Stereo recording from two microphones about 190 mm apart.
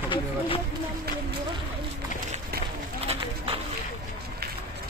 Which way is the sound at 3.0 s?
30° right (ahead or behind).